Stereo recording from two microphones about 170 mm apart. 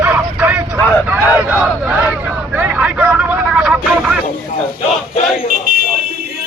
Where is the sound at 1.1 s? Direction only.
5° right (ahead or behind).